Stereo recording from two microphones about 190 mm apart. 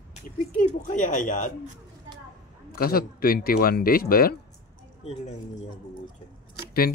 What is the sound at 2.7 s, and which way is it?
Speech, 50° left (ahead or behind).